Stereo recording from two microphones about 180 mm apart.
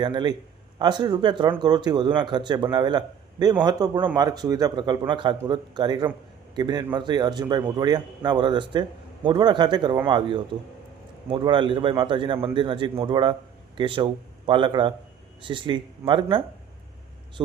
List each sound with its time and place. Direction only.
0.0 s speech: 25° right (ahead or behind)